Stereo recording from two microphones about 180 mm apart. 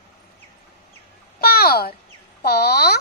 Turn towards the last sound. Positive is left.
turn(degrees=60)  # may be behind; listen again after turning